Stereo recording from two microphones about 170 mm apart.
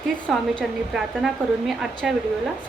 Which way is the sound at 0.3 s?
Centre (ahead or behind).